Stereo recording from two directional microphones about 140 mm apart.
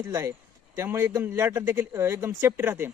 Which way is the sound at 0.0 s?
20° right (ahead or behind).